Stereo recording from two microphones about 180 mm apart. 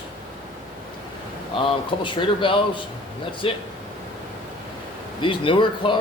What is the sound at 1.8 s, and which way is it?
Speech, 25° left (ahead or behind).